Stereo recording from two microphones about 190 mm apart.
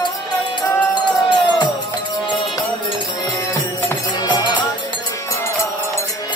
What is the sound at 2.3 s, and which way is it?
Music, 20° left (ahead or behind).